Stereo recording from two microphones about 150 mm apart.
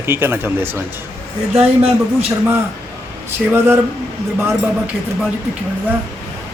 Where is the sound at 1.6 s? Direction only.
40° right (ahead or behind).